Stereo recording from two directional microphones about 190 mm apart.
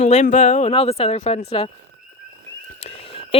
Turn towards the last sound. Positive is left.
turn(degrees=30)  # may be behind; listen again after turning